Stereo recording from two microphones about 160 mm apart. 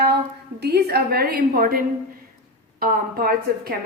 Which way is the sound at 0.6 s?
90° right.